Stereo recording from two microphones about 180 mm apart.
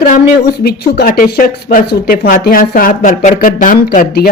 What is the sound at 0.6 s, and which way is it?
Speech, 60° left (ahead or behind).